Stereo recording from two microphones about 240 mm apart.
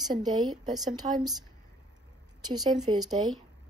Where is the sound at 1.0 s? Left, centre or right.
Right.